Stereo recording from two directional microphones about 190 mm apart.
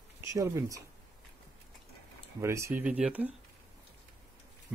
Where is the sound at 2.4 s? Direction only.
15° right (ahead or behind).